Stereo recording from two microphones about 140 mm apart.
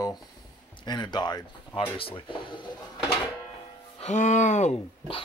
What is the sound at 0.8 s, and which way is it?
Speech, 30° left (ahead or behind).